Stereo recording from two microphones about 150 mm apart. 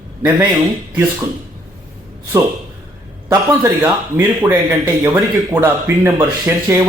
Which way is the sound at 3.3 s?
20° right (ahead or behind).